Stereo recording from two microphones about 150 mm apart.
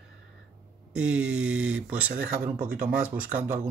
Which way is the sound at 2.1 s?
70° right (ahead or behind).